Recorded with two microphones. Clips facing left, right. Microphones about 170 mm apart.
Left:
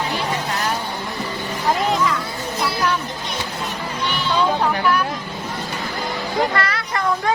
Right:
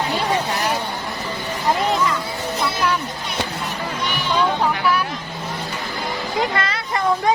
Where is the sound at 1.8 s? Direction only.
Centre (ahead or behind).